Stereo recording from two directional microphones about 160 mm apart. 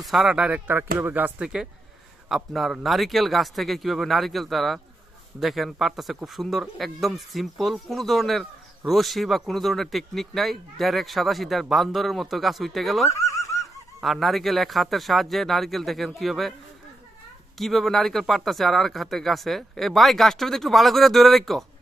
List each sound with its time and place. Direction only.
0.0 s speech: centre (ahead or behind)
13.1 s a sound: 20° left (ahead or behind)
14.0 s speech: centre (ahead or behind)
17.6 s speech: centre (ahead or behind)